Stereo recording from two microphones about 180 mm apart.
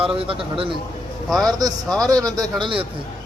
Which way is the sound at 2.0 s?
20° right (ahead or behind).